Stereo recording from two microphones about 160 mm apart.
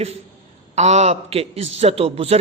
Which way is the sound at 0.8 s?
45° right (ahead or behind).